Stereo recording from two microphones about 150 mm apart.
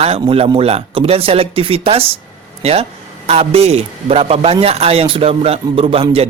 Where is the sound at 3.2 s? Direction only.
45° right (ahead or behind).